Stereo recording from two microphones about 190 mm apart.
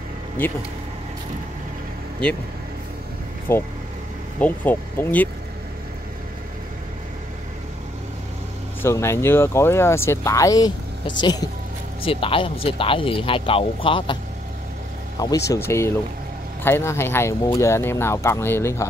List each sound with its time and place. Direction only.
3.5 s speech: 15° left (ahead or behind)
8.8 s speech: 15° left (ahead or behind)
15.1 s speech: 20° left (ahead or behind)